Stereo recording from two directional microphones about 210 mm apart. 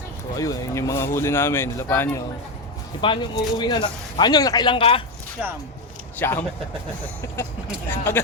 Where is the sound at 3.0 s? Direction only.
20° left (ahead or behind).